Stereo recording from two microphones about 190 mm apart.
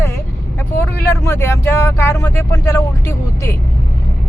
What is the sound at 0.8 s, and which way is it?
Speech, 15° left (ahead or behind).